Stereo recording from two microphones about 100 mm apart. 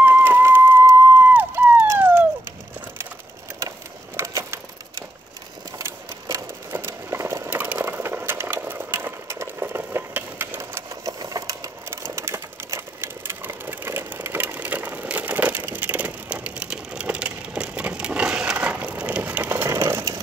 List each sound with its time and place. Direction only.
0.0 s run: 20° right (ahead or behind)
4.2 s a sound: 30° right (ahead or behind)
6.8 s vehicle: 25° right (ahead or behind)
7.4 s a sound: 15° right (ahead or behind)
10.6 s engine: 30° right (ahead or behind)
11.1 s sewing machine: 35° right (ahead or behind)